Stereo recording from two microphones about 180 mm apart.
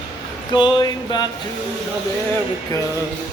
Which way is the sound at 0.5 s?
25° left (ahead or behind).